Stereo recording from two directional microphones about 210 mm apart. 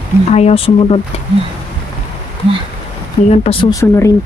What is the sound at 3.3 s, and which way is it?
Speech, 25° left (ahead or behind).